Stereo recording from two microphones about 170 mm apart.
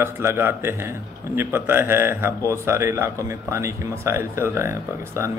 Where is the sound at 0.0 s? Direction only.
15° right (ahead or behind).